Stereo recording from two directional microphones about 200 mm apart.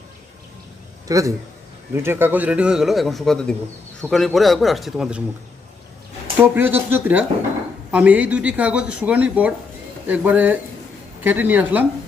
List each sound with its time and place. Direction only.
1.0 s a man's voice: 15° right (ahead or behind)
6.4 s speech: 10° right (ahead or behind)